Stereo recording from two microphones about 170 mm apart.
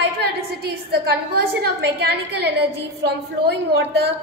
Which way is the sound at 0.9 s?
70° right (ahead or behind).